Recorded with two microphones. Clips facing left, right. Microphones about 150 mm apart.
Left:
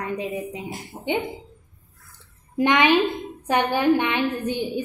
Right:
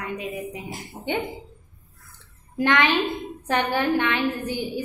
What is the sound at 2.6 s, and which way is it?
A woman's voice, 15° left (ahead or behind).